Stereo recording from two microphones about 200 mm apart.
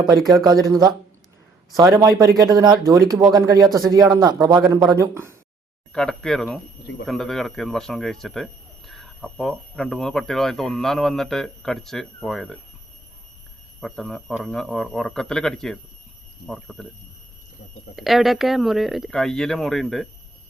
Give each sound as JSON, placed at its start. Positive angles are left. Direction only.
{"t": 0.1, "sound": "speech", "side_deg": 0}
{"t": 0.4, "sound": "speech", "side_deg": -20}
{"t": 5.9, "sound": "speech", "side_deg": 5}
{"t": 13.8, "sound": "speech", "side_deg": 0}
{"t": 17.9, "sound": "speech", "side_deg": 0}